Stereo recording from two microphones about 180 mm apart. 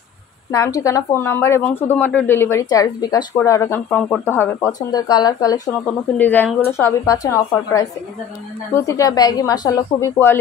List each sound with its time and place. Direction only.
0.5 s speech: 20° left (ahead or behind)
4.6 s speech: 20° left (ahead or behind)
5.7 s speech: 10° left (ahead or behind)
8.7 s speech: 15° left (ahead or behind)